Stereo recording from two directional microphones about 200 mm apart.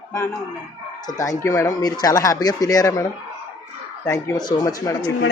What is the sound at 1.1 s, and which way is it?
Speech, 15° left (ahead or behind).